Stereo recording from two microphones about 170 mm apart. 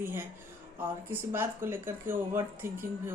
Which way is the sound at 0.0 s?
15° right (ahead or behind).